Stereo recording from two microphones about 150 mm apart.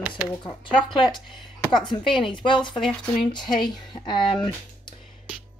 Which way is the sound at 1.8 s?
30° left (ahead or behind).